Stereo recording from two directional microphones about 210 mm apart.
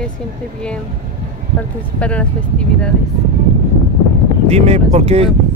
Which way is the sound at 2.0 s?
5° left (ahead or behind).